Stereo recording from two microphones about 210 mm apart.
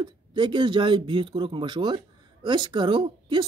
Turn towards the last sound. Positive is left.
turn(degrees=-25)  # may be behind; listen again after turning